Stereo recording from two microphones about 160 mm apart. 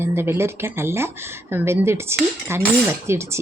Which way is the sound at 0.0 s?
15° right (ahead or behind).